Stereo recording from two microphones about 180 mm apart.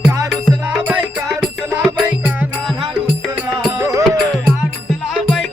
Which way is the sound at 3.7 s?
15° right (ahead or behind).